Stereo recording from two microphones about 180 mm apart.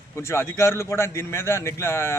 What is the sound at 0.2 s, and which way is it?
Speech, 15° left (ahead or behind).